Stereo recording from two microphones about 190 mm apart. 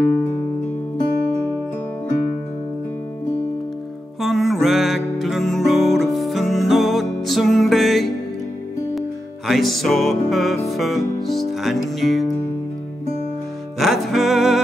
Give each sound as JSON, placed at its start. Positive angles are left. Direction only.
{"t": 0.1, "sound": "music", "side_deg": 15}
{"t": 4.2, "sound": "music", "side_deg": 0}
{"t": 9.5, "sound": "music", "side_deg": 0}
{"t": 13.7, "sound": "music", "side_deg": 0}